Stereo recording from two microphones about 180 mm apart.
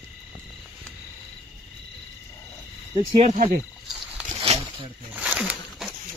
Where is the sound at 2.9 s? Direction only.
35° right (ahead or behind).